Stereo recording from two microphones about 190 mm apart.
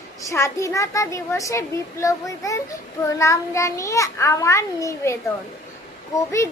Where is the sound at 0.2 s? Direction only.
15° left (ahead or behind).